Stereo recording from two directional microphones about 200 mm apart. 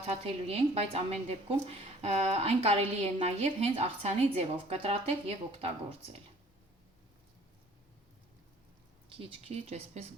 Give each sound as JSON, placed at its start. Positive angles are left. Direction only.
{"t": 0.1, "sound": "a woman's voice", "side_deg": -30}
{"t": 9.1, "sound": "a woman's voice", "side_deg": -30}